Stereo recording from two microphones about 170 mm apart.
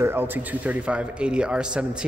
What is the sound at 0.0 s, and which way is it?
Speech, 10° right (ahead or behind).